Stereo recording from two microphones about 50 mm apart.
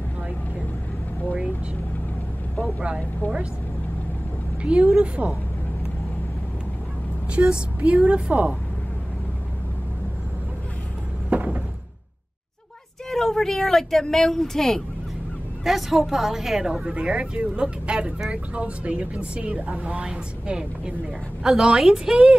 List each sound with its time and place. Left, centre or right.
4.7 s speech: right
7.3 s speech: right
11.2 s a sound: right
13.1 s speech: centre
15.6 s a woman's voice: centre